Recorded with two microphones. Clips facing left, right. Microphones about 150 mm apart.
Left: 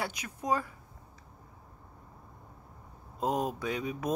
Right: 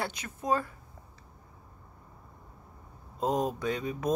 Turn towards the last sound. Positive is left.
turn(degrees=10)  # may be behind; listen again after turning